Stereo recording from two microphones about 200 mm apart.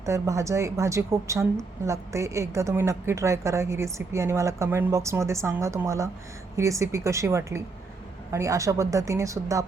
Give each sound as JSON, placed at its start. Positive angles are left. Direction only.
{"t": 0.0, "sound": "speech", "side_deg": -15}